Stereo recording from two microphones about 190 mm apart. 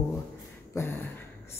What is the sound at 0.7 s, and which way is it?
Speech, 10° left (ahead or behind).